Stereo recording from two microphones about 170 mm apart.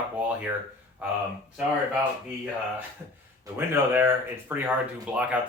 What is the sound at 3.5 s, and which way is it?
Speech, 10° right (ahead or behind).